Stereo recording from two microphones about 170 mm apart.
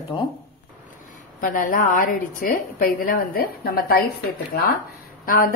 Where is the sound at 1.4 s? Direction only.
50° left (ahead or behind).